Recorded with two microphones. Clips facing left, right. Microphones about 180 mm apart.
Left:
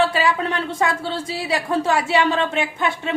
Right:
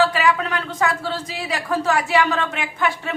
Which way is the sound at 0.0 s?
25° left (ahead or behind).